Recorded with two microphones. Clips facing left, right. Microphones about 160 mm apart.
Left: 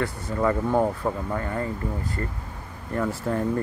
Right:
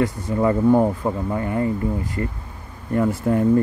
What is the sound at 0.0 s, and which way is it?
Speech, 20° right (ahead or behind).